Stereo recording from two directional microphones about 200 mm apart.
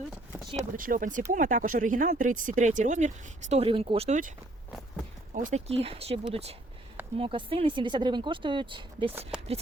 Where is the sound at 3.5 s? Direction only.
30° right (ahead or behind).